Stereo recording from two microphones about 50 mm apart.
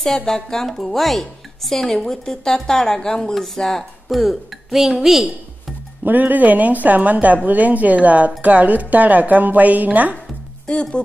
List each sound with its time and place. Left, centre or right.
0.0 s a woman's voice: centre
6.0 s speech: right
10.7 s speech: centre